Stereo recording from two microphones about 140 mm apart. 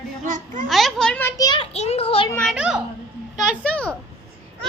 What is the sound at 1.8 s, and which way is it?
Speech, 45° left (ahead or behind).